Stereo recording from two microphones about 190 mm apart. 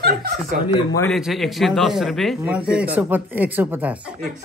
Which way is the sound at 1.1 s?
Centre (ahead or behind).